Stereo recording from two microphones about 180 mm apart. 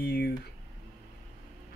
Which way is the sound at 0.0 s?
65° left (ahead or behind).